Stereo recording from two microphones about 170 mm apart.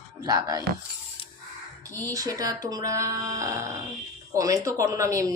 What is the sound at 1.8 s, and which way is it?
Speech, 20° right (ahead or behind).